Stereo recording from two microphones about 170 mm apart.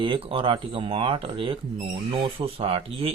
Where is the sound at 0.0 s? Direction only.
30° right (ahead or behind).